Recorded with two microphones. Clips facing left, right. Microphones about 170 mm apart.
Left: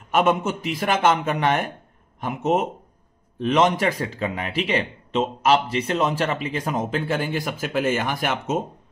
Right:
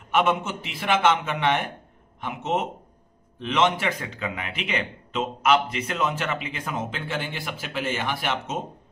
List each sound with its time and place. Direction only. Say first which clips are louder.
0.1 s a man's voice: left 3 dB; 40° left (ahead or behind)